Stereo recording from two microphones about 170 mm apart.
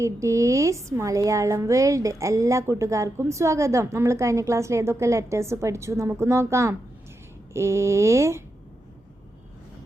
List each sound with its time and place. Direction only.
0.0 s speech: 15° right (ahead or behind)